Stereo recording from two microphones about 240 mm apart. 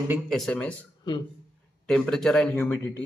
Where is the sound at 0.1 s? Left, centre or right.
Centre.